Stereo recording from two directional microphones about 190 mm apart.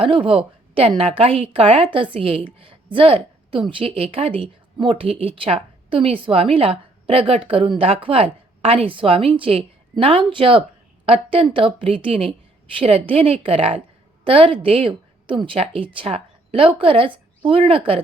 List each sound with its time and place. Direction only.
0.0 s a woman's voice: 30° right (ahead or behind)